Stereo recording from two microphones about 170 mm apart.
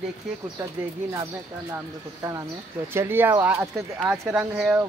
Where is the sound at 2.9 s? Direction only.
15° right (ahead or behind).